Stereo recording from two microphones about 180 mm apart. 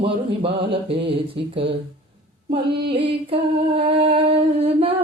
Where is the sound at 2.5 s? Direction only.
30° right (ahead or behind).